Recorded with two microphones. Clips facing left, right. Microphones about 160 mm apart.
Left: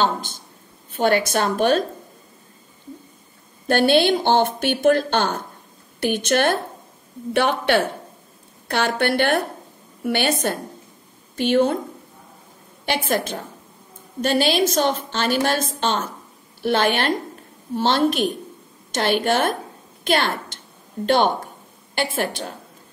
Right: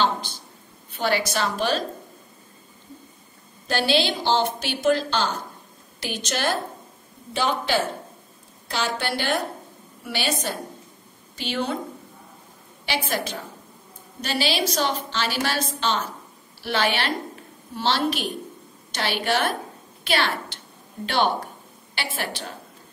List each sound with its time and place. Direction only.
0.0 s a woman's voice: 45° left (ahead or behind)
3.6 s a woman's voice: 55° left (ahead or behind)
12.8 s a woman's voice: 50° left (ahead or behind)